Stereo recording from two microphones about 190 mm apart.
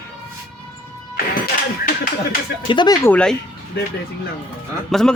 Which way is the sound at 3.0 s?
5° left (ahead or behind).